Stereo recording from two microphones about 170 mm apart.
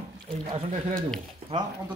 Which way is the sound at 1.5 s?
30° right (ahead or behind).